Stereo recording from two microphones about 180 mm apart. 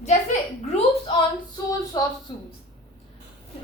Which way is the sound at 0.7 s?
30° left (ahead or behind).